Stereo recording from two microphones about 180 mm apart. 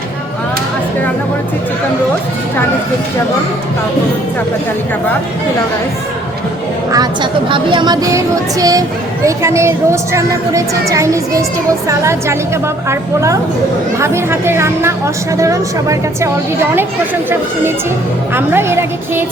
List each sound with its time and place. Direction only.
6.9 s a woman's voice: 25° right (ahead or behind)
18.3 s a woman's voice: 15° right (ahead or behind)